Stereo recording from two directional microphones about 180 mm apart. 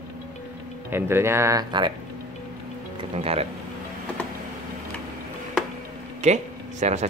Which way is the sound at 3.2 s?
35° right (ahead or behind).